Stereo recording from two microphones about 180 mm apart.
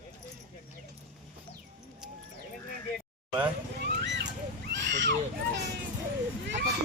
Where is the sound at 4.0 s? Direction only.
70° right (ahead or behind).